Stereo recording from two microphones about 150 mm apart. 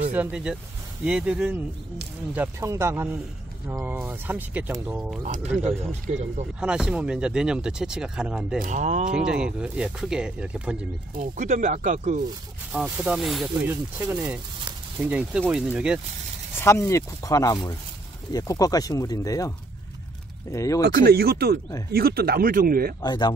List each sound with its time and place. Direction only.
0.1 s speech: 10° right (ahead or behind)
5.2 s speech: 50° right (ahead or behind)
6.6 s speech: 5° right (ahead or behind)
8.5 s speech: 55° right (ahead or behind)
9.1 s speech: 5° right (ahead or behind)
11.1 s speech: 55° right (ahead or behind)
12.7 s speech: 10° right (ahead or behind)
13.7 s speech: 10° right (ahead or behind)
16.5 s speech: 15° left (ahead or behind)
20.5 s speech: 20° left (ahead or behind)
20.8 s speech: 90° right
23.0 s speech: 30° left (ahead or behind)